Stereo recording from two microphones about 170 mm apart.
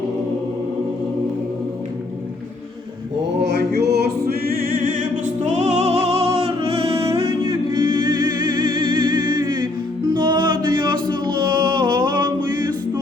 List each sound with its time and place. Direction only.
3.4 s music: 80° right; by 12.3 s 25° right (ahead or behind)